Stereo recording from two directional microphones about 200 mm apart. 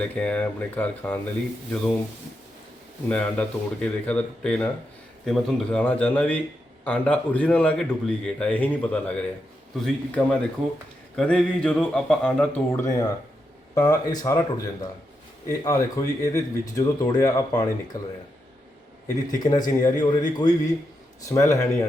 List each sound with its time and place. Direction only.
0.0 s a man's voice: 5° left (ahead or behind)
3.1 s a man's voice: 5° left (ahead or behind)
19.3 s a man's voice: 20° left (ahead or behind)